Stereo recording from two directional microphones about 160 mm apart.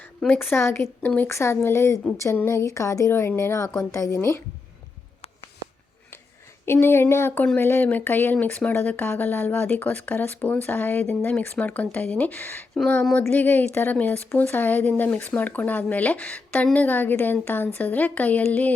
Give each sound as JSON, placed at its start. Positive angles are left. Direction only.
{"t": 0.2, "sound": "speech", "side_deg": 10}
{"t": 6.7, "sound": "speech", "side_deg": 15}